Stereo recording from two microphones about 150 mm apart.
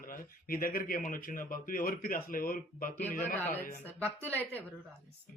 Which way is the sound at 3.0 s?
15° left (ahead or behind).